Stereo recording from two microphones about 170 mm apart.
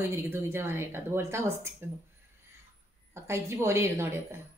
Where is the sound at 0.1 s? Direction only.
15° right (ahead or behind).